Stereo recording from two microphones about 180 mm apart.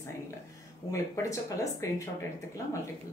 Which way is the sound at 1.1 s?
15° left (ahead or behind).